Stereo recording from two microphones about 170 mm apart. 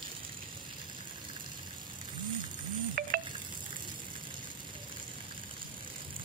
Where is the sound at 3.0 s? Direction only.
55° right (ahead or behind).